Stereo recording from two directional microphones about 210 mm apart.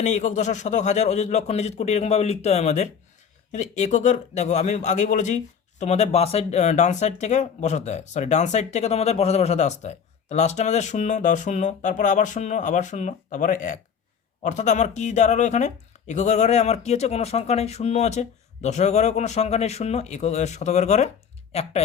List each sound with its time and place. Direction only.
0.0 s speech: 35° left (ahead or behind)